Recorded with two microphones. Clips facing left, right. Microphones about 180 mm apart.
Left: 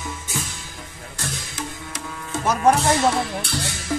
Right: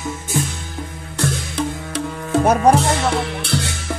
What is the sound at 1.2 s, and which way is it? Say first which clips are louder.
Music: right 10 dB; 65° right (ahead or behind).